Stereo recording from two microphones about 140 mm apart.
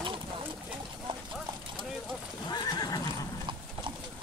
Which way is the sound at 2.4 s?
30° left (ahead or behind).